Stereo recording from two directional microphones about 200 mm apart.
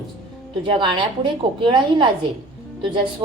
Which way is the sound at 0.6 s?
25° right (ahead or behind).